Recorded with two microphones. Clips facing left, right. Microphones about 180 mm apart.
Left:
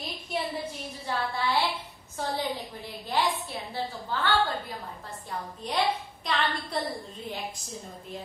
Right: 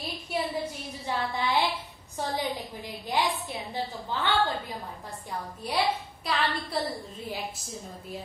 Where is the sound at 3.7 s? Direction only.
20° right (ahead or behind).